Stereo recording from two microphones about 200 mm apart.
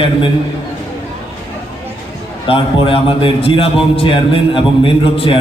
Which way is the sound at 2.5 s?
25° left (ahead or behind).